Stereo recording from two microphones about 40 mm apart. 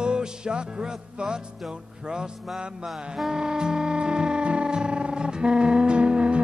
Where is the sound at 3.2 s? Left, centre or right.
Centre.